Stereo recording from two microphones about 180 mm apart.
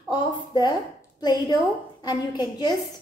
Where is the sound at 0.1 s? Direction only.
25° left (ahead or behind).